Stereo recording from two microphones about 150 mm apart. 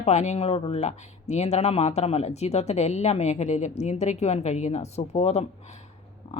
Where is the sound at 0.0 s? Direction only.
50° left (ahead or behind).